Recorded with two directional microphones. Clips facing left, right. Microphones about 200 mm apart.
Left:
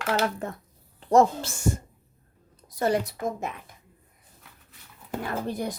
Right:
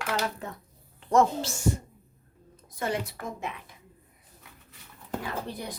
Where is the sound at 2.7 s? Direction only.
40° left (ahead or behind).